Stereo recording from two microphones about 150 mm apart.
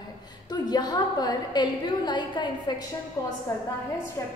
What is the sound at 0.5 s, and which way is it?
A woman's voice, 25° left (ahead or behind).